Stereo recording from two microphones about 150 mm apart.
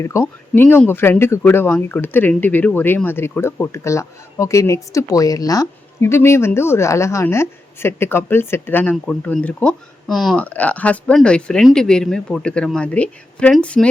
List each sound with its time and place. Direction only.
0.0 s speech: 20° left (ahead or behind)